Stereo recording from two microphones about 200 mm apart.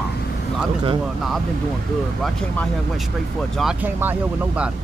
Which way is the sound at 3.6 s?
5° right (ahead or behind).